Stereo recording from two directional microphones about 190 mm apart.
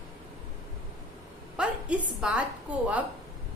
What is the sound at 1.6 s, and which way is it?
A woman's voice, 5° right (ahead or behind).